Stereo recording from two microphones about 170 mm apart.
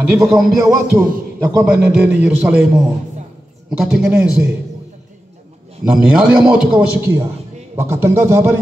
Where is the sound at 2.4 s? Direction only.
5° right (ahead or behind).